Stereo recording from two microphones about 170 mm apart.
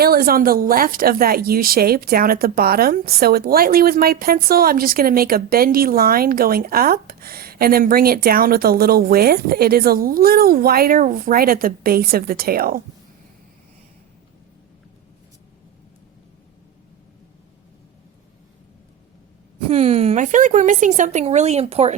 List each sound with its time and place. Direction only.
0.0 s speech: 60° right (ahead or behind)
19.6 s a woman's voice: 35° right (ahead or behind)